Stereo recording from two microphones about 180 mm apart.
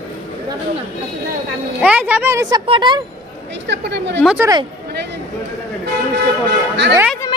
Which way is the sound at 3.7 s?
75° right (ahead or behind).